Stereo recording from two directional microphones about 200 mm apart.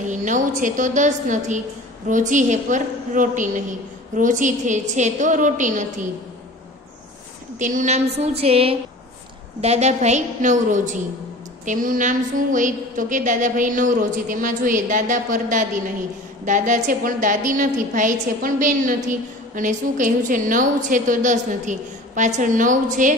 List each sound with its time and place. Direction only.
0.0 s a woman's voice: 40° right (ahead or behind)
7.5 s a woman's voice: 40° right (ahead or behind)